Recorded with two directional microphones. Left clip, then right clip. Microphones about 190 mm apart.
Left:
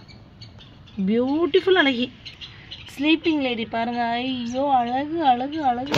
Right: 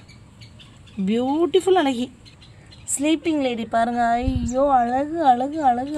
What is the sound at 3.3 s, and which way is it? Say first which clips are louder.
A woman's voice: right 1 dB; 25° right (ahead or behind).